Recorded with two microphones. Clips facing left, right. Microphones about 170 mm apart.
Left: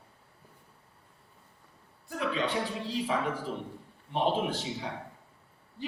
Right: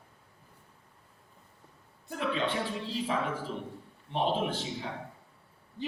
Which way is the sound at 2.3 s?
40° left (ahead or behind).